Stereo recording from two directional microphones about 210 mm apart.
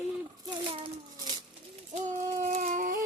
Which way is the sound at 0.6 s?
25° right (ahead or behind).